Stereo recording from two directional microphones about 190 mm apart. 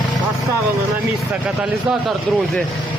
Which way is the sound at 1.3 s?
Centre (ahead or behind).